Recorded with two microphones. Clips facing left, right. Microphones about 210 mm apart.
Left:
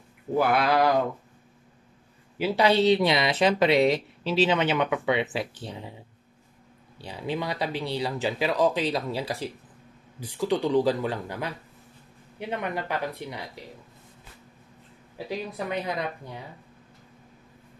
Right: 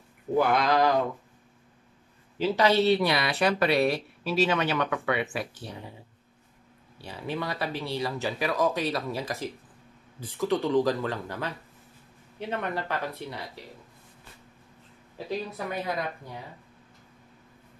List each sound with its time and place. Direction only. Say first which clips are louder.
0.4 s speech: left 1 dB; 5° left (ahead or behind)
2.3 s speech: left 1 dB; 10° left (ahead or behind)
7.0 s speech: left 2 dB; 15° left (ahead or behind)
15.1 s speech: even; 20° left (ahead or behind)